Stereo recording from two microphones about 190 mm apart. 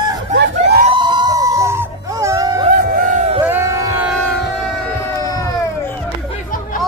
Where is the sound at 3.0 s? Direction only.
40° right (ahead or behind).